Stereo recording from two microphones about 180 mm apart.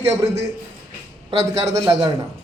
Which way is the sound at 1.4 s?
15° right (ahead or behind).